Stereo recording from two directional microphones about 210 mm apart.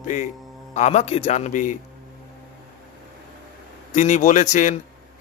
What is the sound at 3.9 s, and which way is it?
Speech, 35° left (ahead or behind).